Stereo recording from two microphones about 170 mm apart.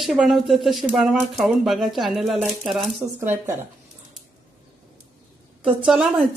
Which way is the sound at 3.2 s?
10° right (ahead or behind).